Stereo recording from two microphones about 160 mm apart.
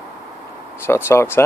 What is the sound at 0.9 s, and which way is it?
Speech, 15° left (ahead or behind).